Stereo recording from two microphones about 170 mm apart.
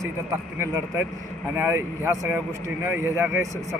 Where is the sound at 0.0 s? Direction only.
15° right (ahead or behind).